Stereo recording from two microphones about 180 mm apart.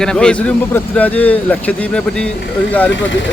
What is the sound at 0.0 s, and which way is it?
Speech, 5° left (ahead or behind).